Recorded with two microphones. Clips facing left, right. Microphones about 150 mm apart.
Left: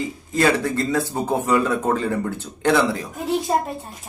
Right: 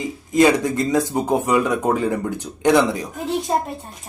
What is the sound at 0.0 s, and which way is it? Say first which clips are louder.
Speech: right 4 dB; 15° right (ahead or behind).